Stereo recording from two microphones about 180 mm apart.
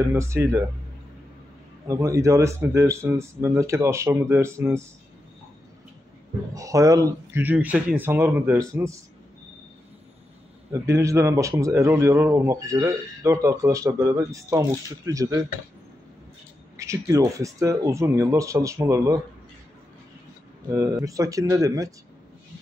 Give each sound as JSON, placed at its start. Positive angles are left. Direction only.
{"t": 0.0, "sound": "speech", "side_deg": -15}
{"t": 1.9, "sound": "speech", "side_deg": -20}
{"t": 6.5, "sound": "speech", "side_deg": -20}
{"t": 10.7, "sound": "speech", "side_deg": -15}
{"t": 16.7, "sound": "speech", "side_deg": -15}
{"t": 20.7, "sound": "speech", "side_deg": -20}